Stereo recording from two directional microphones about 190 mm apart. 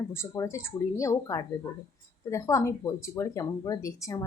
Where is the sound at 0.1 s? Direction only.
15° left (ahead or behind).